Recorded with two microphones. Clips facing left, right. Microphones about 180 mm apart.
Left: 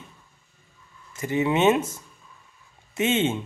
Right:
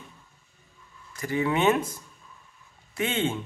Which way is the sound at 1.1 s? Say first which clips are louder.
Left 3 dB; 20° left (ahead or behind).